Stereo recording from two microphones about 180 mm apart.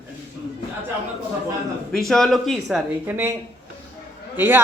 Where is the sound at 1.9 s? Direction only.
Centre (ahead or behind).